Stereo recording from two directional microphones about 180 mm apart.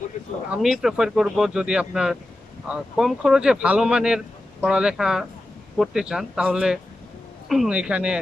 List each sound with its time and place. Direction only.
0.5 s speech: 5° right (ahead or behind)